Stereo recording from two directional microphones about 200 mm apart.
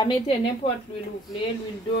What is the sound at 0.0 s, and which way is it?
Speech, 20° left (ahead or behind).